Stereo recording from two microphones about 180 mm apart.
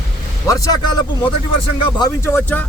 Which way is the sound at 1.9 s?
20° left (ahead or behind).